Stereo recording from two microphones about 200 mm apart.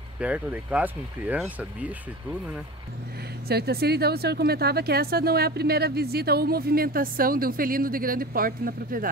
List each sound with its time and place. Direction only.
0.2 s speech: 5° right (ahead or behind)
3.4 s speech: 50° right (ahead or behind)